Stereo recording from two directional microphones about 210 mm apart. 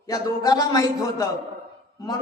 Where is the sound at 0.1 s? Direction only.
20° left (ahead or behind).